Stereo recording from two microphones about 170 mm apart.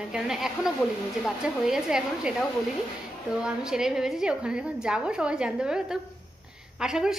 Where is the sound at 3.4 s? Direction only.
5° right (ahead or behind).